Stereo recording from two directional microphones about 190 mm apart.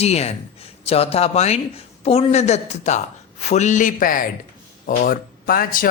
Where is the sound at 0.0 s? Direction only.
35° left (ahead or behind).